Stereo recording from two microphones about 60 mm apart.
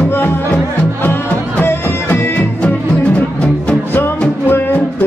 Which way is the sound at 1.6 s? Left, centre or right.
Left.